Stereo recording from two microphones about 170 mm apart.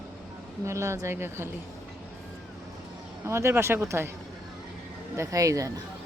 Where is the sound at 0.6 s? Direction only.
15° right (ahead or behind).